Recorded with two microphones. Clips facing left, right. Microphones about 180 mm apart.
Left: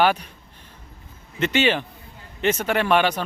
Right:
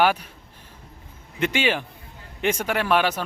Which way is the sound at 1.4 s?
10° right (ahead or behind).